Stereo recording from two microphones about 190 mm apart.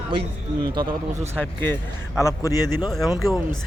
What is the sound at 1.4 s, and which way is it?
A man's voice, 10° left (ahead or behind).